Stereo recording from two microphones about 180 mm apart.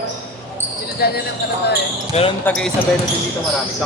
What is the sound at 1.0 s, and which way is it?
Speech, 60° left (ahead or behind).